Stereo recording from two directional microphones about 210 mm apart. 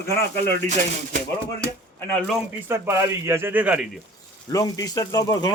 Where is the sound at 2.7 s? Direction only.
10° right (ahead or behind).